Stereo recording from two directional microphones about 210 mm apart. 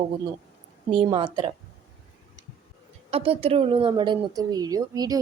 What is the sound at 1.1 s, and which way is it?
Speech, 25° right (ahead or behind).